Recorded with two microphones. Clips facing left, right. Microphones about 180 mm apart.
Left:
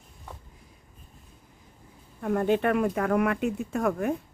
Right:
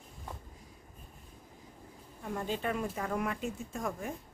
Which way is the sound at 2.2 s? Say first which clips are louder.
Left 11 dB; 60° left (ahead or behind).